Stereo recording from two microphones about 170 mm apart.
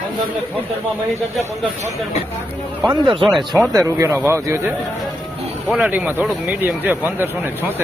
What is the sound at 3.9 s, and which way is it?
Speech, 15° right (ahead or behind).